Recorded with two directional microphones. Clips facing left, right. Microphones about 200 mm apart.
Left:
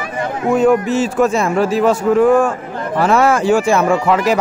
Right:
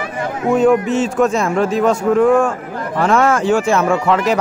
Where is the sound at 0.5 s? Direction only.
Centre (ahead or behind).